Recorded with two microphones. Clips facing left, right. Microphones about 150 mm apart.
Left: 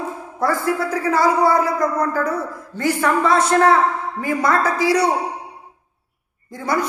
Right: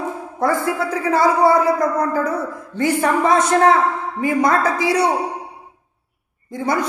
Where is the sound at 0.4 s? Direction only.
20° right (ahead or behind).